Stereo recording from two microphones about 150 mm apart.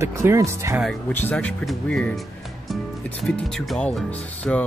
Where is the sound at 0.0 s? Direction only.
20° right (ahead or behind).